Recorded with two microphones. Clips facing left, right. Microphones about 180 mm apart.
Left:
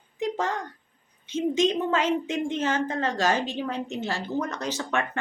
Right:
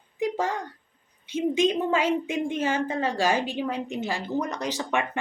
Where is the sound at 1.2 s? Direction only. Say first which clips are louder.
Even; 10° right (ahead or behind).